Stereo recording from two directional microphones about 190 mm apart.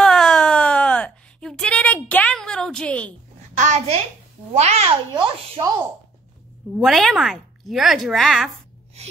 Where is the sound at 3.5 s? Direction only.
40° right (ahead or behind).